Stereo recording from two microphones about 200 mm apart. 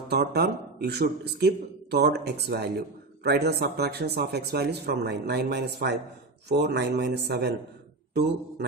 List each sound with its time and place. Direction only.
0.1 s a man's voice: 55° right (ahead or behind)